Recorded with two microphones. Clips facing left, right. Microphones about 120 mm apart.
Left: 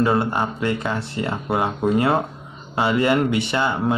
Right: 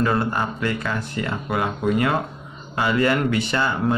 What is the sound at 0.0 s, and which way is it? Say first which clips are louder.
Speech: left 2 dB; 20° left (ahead or behind).